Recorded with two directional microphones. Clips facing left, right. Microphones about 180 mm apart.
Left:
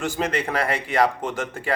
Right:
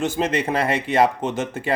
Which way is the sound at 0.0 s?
20° right (ahead or behind).